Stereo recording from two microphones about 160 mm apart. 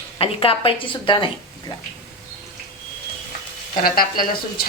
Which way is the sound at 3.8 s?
65° left (ahead or behind).